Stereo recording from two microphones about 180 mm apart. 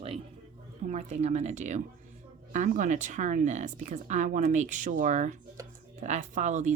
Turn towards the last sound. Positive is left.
turn(degrees=-40)  # may be behind; listen again after turning